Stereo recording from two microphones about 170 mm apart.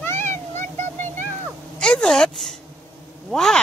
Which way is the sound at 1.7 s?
5° left (ahead or behind).